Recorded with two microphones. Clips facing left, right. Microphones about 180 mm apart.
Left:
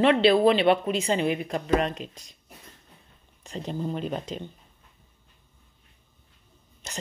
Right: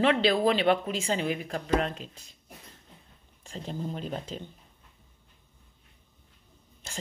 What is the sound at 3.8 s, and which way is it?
Speech, 65° left (ahead or behind).